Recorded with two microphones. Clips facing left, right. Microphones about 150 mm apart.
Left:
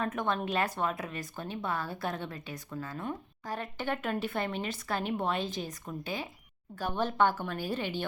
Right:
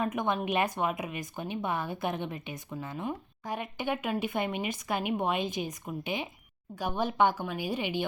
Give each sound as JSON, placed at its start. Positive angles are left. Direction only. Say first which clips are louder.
{"t": 0.0, "sound": "speech", "louder": "right 2 dB", "side_deg": -15}